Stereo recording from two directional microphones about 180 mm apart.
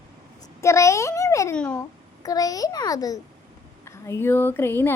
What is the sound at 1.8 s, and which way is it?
A child's voice, 20° left (ahead or behind).